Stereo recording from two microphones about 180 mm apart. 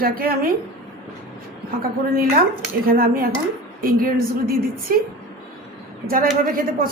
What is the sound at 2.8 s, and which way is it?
A woman's voice, 55° right (ahead or behind).